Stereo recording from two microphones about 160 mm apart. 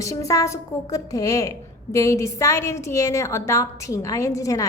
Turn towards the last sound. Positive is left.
turn(degrees=20)  # may be behind; listen again after turning